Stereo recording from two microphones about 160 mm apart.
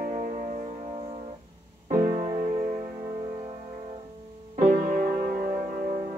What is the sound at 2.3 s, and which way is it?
Music, 50° right (ahead or behind).